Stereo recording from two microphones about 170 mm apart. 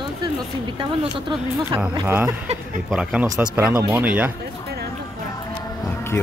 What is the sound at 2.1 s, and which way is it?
Speech, 10° right (ahead or behind).